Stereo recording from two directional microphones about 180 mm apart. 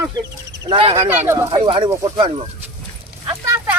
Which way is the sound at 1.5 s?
25° right (ahead or behind).